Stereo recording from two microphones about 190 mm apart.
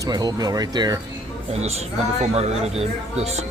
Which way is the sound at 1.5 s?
35° right (ahead or behind).